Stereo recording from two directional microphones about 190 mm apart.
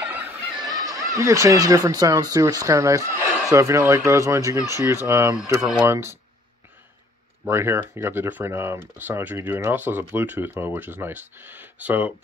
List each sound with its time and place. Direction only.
0.0 s speech: 10° right (ahead or behind)
7.4 s speech: 15° right (ahead or behind)